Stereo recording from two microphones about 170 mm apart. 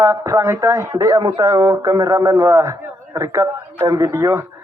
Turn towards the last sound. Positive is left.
turn(degrees=-15)  # may be behind; listen again after turning